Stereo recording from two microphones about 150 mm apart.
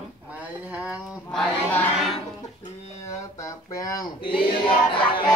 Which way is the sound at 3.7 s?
25° left (ahead or behind).